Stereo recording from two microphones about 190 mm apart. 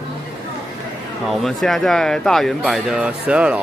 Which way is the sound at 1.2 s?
Centre (ahead or behind).